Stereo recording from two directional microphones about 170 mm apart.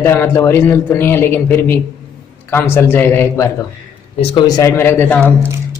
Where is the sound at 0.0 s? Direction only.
15° left (ahead or behind).